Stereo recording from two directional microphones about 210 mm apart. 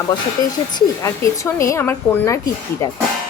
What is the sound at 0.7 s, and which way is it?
A woman's voice, 15° left (ahead or behind).